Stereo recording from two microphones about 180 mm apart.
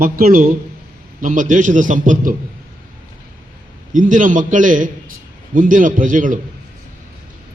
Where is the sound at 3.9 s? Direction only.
45° right (ahead or behind).